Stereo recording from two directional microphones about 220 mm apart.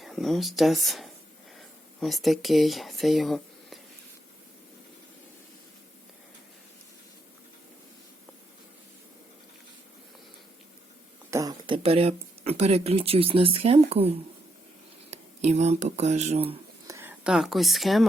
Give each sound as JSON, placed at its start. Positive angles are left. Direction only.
{"t": 0.0, "sound": "speech", "side_deg": 0}
{"t": 11.3, "sound": "speech", "side_deg": -15}
{"t": 16.8, "sound": "speech", "side_deg": -10}